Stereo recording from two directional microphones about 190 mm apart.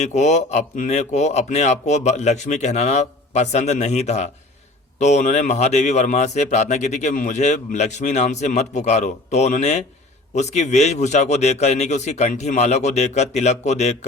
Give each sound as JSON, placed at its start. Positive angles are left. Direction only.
{"t": 0.0, "sound": "speech", "side_deg": 40}